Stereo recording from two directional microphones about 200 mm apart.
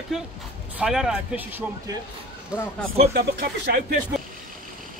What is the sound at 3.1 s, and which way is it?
Speech, 50° right (ahead or behind).